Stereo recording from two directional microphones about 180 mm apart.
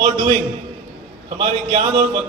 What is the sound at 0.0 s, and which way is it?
Speech, 40° right (ahead or behind).